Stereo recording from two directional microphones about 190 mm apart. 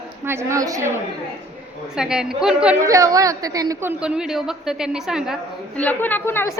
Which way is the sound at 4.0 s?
5° right (ahead or behind).